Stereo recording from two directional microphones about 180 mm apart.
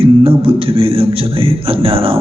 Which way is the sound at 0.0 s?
30° right (ahead or behind).